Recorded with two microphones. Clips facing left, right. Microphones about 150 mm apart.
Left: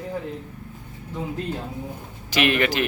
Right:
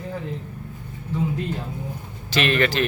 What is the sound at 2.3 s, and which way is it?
Speech, 15° left (ahead or behind).